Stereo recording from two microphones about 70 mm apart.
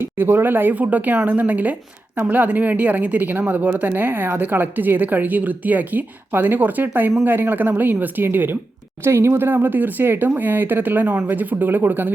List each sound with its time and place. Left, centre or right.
0.0 s a woman's voice: right